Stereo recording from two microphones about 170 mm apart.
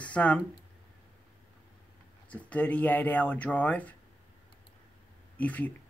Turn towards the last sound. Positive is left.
turn(degrees=10)  # may be behind; listen again after turning